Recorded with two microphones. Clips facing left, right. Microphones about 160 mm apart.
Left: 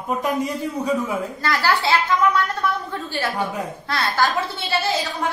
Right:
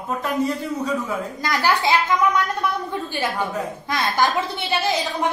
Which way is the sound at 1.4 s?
15° right (ahead or behind).